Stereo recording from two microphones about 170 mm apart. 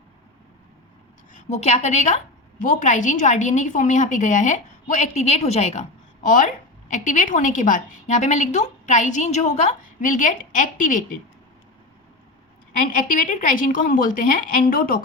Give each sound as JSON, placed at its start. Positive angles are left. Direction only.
{"t": 1.3, "sound": "a woman's voice", "side_deg": 45}
{"t": 12.9, "sound": "a woman's voice", "side_deg": 50}